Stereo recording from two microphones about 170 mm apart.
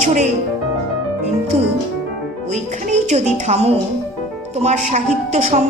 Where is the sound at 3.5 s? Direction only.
40° right (ahead or behind).